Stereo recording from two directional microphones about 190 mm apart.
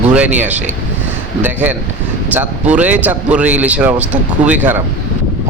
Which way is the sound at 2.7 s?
10° right (ahead or behind).